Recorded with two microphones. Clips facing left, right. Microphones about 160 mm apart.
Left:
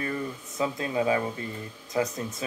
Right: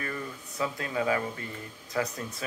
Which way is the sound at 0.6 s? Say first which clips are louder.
Left 3 dB; 25° left (ahead or behind).